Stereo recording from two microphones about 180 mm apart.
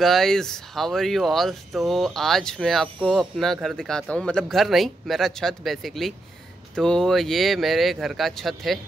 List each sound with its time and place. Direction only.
0.0 s speech: centre (ahead or behind)